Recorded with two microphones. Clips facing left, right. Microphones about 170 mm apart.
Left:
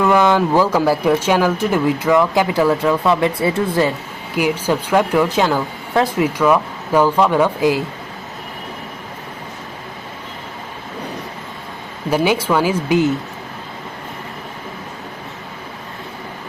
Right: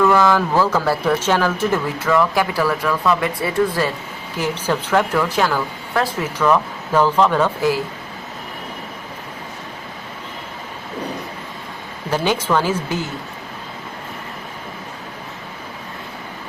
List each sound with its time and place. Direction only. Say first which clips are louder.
0.0 s speech: left 1 dB; 20° left (ahead or behind)
4.4 s speech: left 4 dB; 10° left (ahead or behind)
12.1 s speech: left 2 dB; 10° left (ahead or behind)